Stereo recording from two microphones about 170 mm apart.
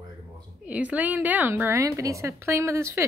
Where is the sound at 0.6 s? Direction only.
10° right (ahead or behind).